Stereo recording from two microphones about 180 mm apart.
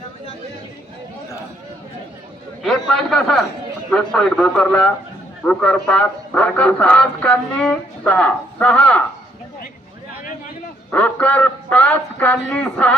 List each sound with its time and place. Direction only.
2.6 s a man's voice: 5° left (ahead or behind)
10.9 s speech: 10° left (ahead or behind)